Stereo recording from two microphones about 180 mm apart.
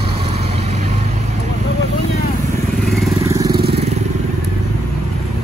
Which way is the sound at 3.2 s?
20° right (ahead or behind).